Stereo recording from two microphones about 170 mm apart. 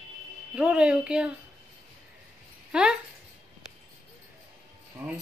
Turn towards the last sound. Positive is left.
turn(degrees=-10)  # may be behind; listen again after turning